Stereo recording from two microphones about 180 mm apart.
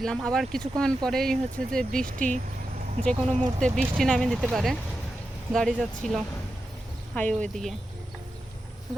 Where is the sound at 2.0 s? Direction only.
45° right (ahead or behind).